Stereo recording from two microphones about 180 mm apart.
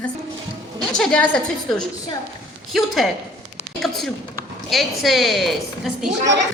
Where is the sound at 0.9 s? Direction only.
5° left (ahead or behind).